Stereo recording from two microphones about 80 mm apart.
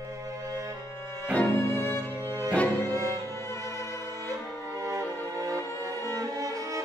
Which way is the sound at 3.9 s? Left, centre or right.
Right.